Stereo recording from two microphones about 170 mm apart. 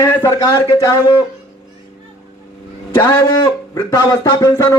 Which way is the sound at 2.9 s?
25° left (ahead or behind).